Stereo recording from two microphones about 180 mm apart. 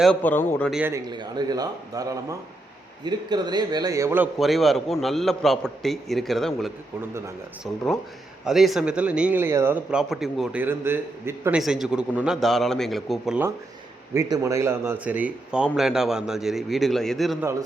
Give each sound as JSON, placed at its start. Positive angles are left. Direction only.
{"t": 0.0, "sound": "a man's voice", "side_deg": 10}
{"t": 0.7, "sound": "a man's voice", "side_deg": -10}
{"t": 4.4, "sound": "a man's voice", "side_deg": 0}
{"t": 8.4, "sound": "a man's voice", "side_deg": 0}
{"t": 14.1, "sound": "a man's voice", "side_deg": -20}